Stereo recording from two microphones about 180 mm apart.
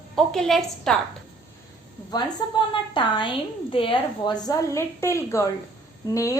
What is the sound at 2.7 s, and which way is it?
A woman's voice, 25° left (ahead or behind).